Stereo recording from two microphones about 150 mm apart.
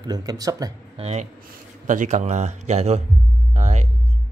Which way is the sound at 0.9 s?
45° right (ahead or behind).